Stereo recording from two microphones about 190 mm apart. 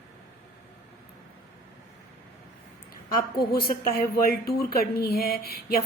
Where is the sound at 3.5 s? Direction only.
50° left (ahead or behind).